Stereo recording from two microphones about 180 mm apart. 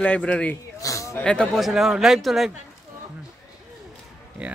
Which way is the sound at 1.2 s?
5° left (ahead or behind).